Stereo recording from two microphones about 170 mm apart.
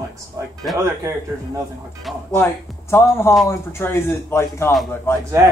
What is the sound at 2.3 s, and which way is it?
A man's voice, 15° left (ahead or behind).